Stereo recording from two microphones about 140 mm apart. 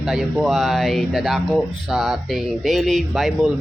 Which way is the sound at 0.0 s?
Centre (ahead or behind).